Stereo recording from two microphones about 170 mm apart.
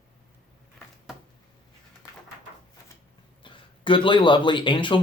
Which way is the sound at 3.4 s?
30° left (ahead or behind).